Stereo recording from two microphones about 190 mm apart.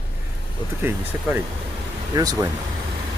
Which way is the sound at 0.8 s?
10° right (ahead or behind).